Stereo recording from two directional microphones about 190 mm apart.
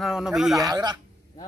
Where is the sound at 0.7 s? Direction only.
20° right (ahead or behind).